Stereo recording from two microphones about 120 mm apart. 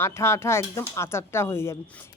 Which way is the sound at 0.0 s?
20° left (ahead or behind).